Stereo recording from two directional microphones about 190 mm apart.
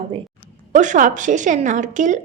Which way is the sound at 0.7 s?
40° right (ahead or behind).